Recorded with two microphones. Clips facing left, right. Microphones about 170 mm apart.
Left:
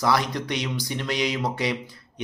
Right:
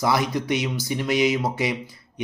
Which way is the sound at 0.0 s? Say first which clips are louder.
Right 1 dB; 10° right (ahead or behind).